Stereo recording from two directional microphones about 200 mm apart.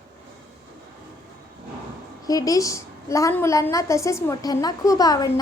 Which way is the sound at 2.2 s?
20° left (ahead or behind).